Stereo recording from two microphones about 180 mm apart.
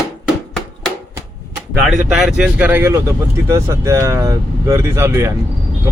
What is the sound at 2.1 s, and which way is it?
Speech, centre (ahead or behind).